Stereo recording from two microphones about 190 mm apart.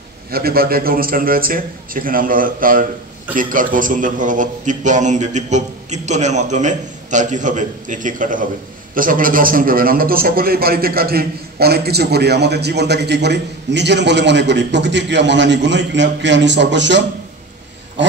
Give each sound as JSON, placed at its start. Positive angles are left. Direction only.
{"t": 0.3, "sound": "a man's voice", "side_deg": -50}